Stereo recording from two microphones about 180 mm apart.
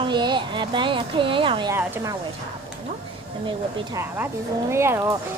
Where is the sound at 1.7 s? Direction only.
15° right (ahead or behind).